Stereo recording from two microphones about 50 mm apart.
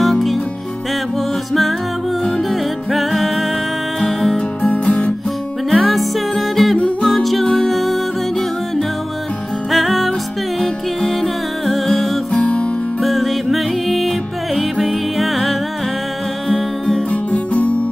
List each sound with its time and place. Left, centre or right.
0.0 s music: centre
2.9 s music: centre
4.6 s music: left
5.7 s music: centre
12.4 s music: left
13.0 s music: centre
17.1 s music: left